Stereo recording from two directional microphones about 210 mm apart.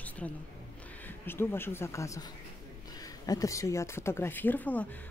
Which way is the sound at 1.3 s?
10° left (ahead or behind).